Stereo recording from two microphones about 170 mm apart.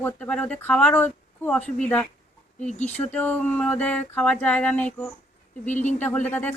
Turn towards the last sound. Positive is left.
turn(degrees=10)  # may be behind; listen again after turning